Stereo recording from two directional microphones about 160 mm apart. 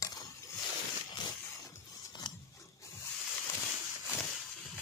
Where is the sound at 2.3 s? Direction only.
30° left (ahead or behind).